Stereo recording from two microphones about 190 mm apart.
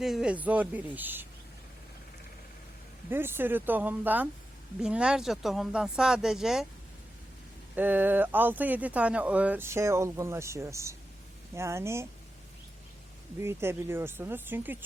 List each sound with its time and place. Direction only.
0.0 s speech: 5° right (ahead or behind)
3.1 s speech: 10° right (ahead or behind)
7.8 s speech: 10° right (ahead or behind)
13.4 s speech: 15° right (ahead or behind)